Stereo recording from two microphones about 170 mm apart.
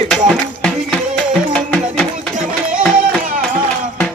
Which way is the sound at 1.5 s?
5° left (ahead or behind).